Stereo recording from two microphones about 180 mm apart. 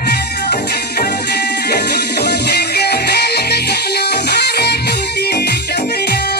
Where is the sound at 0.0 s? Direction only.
65° left (ahead or behind).